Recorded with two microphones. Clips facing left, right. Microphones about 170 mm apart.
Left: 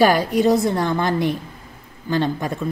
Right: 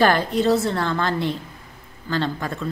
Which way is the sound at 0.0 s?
10° left (ahead or behind).